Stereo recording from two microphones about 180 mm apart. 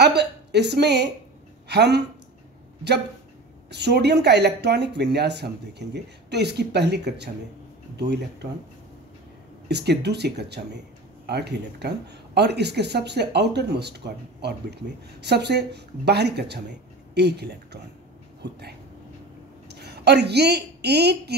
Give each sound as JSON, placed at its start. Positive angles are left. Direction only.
{"t": 0.0, "sound": "a woman's voice", "side_deg": -70}
{"t": 3.7, "sound": "speech", "side_deg": -65}
{"t": 9.7, "sound": "a woman's voice", "side_deg": -65}